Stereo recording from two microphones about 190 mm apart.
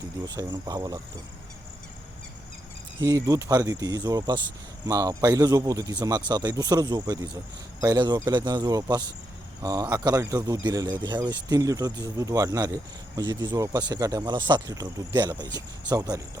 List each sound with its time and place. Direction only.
0.3 s speech: 20° right (ahead or behind)
3.0 s speech: 20° right (ahead or behind)